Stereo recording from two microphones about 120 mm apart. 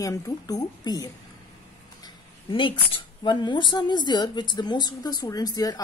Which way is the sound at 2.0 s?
45° left (ahead or behind).